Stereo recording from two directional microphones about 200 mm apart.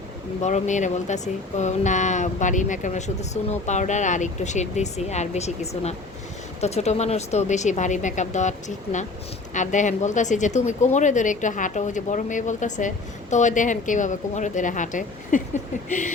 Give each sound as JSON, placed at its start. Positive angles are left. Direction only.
{"t": 0.4, "sound": "speech", "side_deg": 35}